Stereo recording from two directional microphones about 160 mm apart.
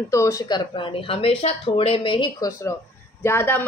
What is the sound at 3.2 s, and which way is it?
Speech, 15° left (ahead or behind).